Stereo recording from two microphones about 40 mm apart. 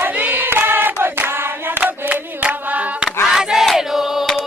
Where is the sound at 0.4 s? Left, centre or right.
Right.